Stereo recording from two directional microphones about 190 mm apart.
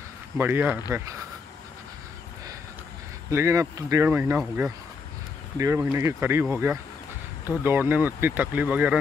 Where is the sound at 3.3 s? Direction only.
15° right (ahead or behind).